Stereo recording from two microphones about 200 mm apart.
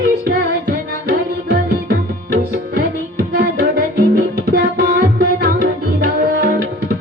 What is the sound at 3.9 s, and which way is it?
Tabla, 50° right (ahead or behind).